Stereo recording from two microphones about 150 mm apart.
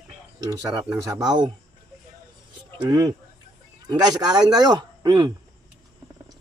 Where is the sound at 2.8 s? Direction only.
30° right (ahead or behind).